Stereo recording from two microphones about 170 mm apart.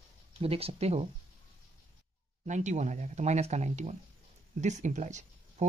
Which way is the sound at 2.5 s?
45° right (ahead or behind).